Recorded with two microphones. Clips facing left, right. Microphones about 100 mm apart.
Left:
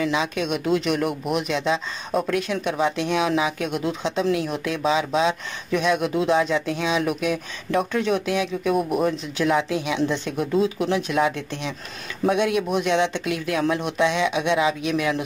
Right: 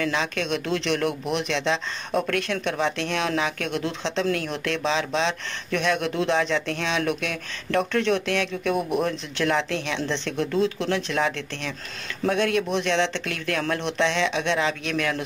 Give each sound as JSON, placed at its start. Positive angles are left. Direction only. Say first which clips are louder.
{"t": 0.0, "sound": "speech", "louder": "left 2 dB", "side_deg": 10}